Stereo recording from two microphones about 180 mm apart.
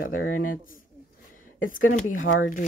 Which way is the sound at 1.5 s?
90° left.